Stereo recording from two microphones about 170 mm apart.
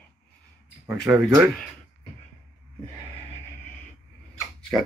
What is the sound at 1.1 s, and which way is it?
Speech, 10° right (ahead or behind).